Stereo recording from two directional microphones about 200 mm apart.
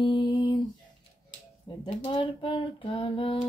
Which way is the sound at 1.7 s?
25° left (ahead or behind).